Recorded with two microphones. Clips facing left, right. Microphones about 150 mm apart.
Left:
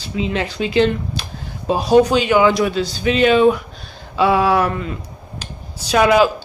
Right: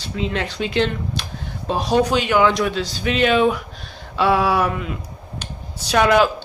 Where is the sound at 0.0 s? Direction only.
5° left (ahead or behind).